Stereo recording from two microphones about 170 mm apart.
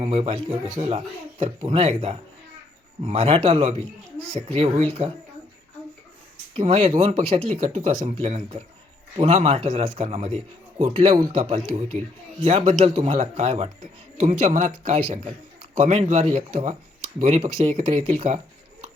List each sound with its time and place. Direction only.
0.0 s speech: 35° right (ahead or behind)
6.5 s speech: 35° right (ahead or behind)